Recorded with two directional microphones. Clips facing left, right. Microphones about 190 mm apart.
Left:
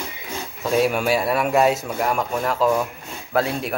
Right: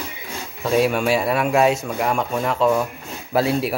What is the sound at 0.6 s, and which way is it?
A man's voice, centre (ahead or behind).